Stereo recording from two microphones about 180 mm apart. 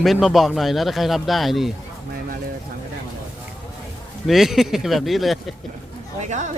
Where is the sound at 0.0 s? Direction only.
Centre (ahead or behind).